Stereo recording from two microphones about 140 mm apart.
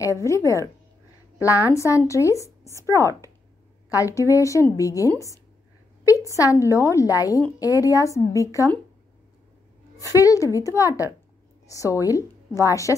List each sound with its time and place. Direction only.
0.0 s speech: 20° left (ahead or behind)
9.9 s a woman's voice: 25° left (ahead or behind)